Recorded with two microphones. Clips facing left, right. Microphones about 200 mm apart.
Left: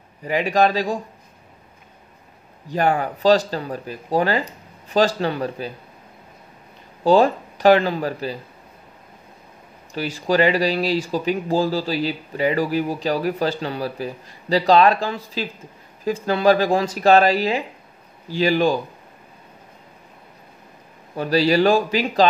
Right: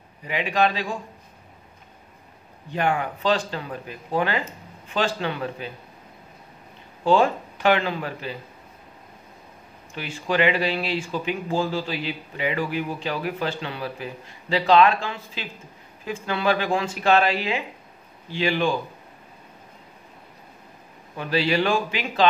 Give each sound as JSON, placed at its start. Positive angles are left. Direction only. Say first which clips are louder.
{"t": 0.2, "sound": "speech", "louder": "left 4 dB", "side_deg": 40}
{"t": 2.7, "sound": "speech", "louder": "left 4 dB", "side_deg": 40}
{"t": 7.1, "sound": "speech", "louder": "left 4 dB", "side_deg": 35}
{"t": 9.9, "sound": "speech", "louder": "left 5 dB", "side_deg": 35}
{"t": 21.2, "sound": "speech", "louder": "left 6 dB", "side_deg": 40}